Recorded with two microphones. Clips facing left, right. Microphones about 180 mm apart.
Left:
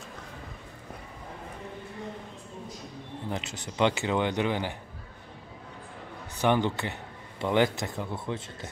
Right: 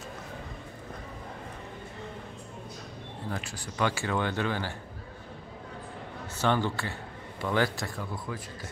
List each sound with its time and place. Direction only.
3.3 s speech: 20° left (ahead or behind)
6.3 s a man's voice: 15° left (ahead or behind)